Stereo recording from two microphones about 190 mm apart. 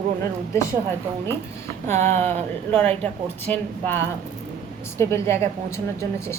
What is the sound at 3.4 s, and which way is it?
A woman's voice, 10° left (ahead or behind).